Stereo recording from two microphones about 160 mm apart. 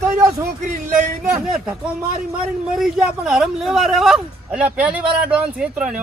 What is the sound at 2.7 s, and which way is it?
Speech, centre (ahead or behind).